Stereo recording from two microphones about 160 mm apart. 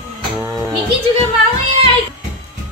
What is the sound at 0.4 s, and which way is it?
Music, 15° right (ahead or behind).